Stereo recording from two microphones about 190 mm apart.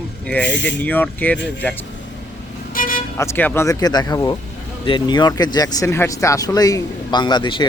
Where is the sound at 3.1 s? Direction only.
10° left (ahead or behind).